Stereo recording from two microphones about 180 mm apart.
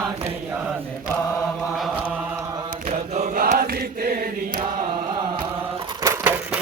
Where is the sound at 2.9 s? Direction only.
40° right (ahead or behind).